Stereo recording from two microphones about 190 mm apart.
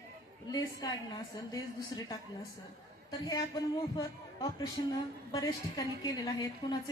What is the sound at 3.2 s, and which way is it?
A woman's voice, 20° left (ahead or behind).